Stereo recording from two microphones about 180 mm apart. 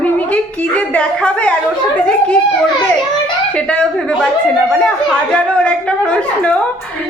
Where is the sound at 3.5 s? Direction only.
5° left (ahead or behind).